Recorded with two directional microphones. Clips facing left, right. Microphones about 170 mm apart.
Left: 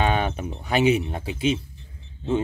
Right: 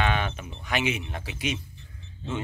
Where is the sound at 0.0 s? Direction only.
40° left (ahead or behind).